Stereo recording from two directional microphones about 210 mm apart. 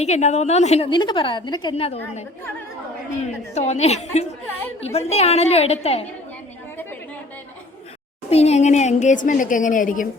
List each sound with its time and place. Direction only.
0.0 s a woman's voice: 30° left (ahead or behind)
3.5 s a woman's voice: 30° left (ahead or behind)
8.3 s speech: 30° left (ahead or behind)